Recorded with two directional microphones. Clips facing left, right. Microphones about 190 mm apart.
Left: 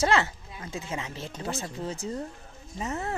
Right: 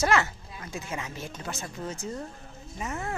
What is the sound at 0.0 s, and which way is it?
Speech, 25° left (ahead or behind).